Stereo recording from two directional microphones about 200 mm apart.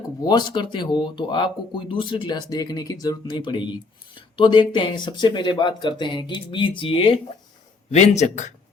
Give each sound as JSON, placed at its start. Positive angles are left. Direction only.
{"t": 0.3, "sound": "speech", "side_deg": 20}